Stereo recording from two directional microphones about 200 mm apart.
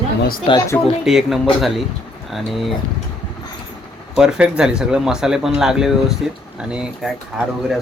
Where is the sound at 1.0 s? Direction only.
Centre (ahead or behind).